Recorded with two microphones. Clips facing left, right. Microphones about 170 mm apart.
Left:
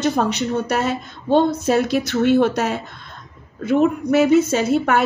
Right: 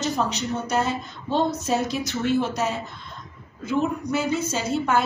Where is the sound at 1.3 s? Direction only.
65° left (ahead or behind).